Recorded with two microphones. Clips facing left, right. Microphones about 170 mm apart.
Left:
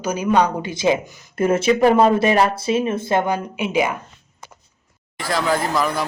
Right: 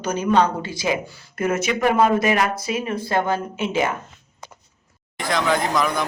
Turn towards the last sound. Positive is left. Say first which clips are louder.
# left 1 dB
turn(degrees=5)  # may be behind; listen again after turning